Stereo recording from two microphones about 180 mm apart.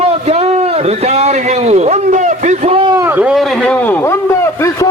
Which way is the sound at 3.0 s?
10° right (ahead or behind).